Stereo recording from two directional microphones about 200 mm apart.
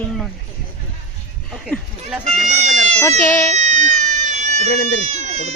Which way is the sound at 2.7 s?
35° right (ahead or behind).